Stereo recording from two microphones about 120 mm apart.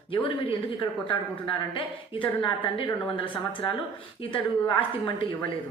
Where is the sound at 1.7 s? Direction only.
45° left (ahead or behind).